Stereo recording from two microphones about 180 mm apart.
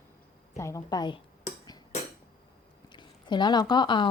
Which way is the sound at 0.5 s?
15° left (ahead or behind).